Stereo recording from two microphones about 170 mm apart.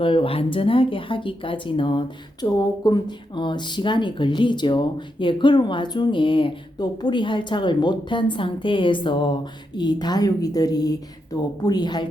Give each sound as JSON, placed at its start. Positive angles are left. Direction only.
{"t": 0.0, "sound": "speech", "side_deg": 30}